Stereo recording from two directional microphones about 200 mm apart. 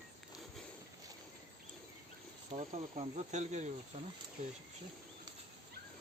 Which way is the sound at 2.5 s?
35° right (ahead or behind).